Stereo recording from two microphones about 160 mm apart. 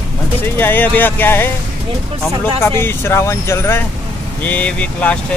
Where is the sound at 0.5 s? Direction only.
10° left (ahead or behind).